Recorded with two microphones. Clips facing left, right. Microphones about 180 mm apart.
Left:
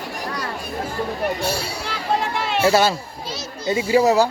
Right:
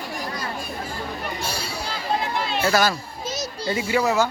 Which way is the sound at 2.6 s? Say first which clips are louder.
Left 4 dB; 25° left (ahead or behind).